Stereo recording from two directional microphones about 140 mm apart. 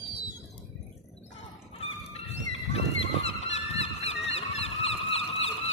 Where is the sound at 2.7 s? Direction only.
50° left (ahead or behind).